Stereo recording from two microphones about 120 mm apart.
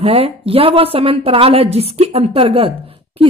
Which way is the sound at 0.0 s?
55° right (ahead or behind).